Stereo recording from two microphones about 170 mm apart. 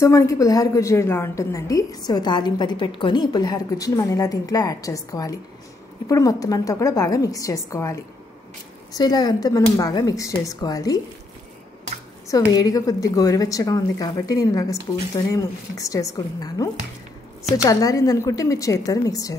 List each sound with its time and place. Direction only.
0.0 s a woman's voice: 15° left (ahead or behind)
12.3 s a woman's voice: 20° left (ahead or behind)